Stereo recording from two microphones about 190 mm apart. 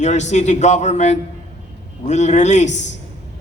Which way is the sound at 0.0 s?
40° left (ahead or behind).